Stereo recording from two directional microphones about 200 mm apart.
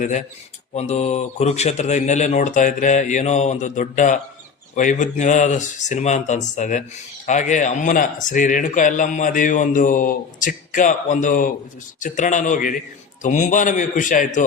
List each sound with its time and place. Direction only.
0.0 s speech: 35° left (ahead or behind)